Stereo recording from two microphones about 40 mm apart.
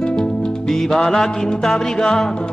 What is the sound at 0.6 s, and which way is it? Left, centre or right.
Music, centre.